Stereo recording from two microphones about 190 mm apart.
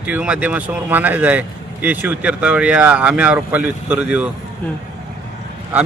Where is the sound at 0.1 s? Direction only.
5° right (ahead or behind).